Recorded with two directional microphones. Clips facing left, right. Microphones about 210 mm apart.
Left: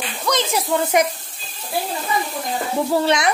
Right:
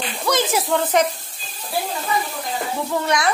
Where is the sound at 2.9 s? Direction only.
30° left (ahead or behind).